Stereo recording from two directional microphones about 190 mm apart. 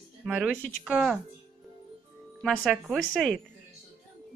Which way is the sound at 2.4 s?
Centre (ahead or behind).